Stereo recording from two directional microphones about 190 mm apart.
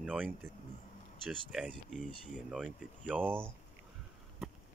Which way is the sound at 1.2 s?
5° right (ahead or behind).